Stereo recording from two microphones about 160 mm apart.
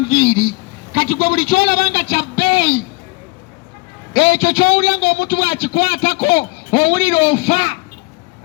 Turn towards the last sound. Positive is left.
turn(degrees=30)  # may be behind; listen again after turning